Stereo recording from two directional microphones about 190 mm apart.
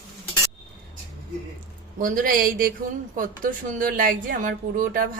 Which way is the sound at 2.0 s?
50° right (ahead or behind).